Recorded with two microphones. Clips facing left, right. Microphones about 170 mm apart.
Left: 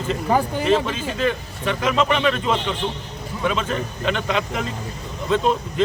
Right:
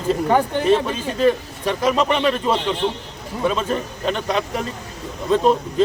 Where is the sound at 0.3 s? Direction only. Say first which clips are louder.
Right 1 dB; 5° left (ahead or behind).